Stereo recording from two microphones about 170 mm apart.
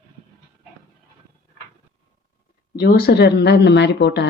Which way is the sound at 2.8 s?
65° left (ahead or behind).